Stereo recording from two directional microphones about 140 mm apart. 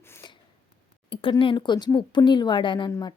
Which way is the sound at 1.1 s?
40° left (ahead or behind).